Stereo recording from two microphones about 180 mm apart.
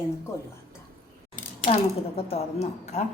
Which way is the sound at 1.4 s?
40° left (ahead or behind).